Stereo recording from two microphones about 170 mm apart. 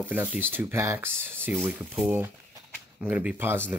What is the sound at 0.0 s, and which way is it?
Speech, 10° right (ahead or behind).